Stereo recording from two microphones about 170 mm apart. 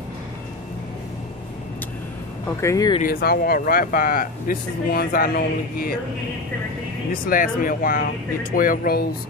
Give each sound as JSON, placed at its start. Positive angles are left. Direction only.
{"t": 2.6, "sound": "speech", "side_deg": 20}
{"t": 3.0, "sound": "speech", "side_deg": 65}
{"t": 7.1, "sound": "speech", "side_deg": 55}